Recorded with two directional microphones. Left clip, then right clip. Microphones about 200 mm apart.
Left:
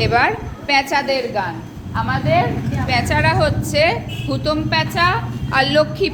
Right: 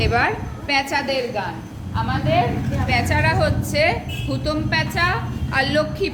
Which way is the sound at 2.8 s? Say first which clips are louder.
Left 3 dB; centre (ahead or behind).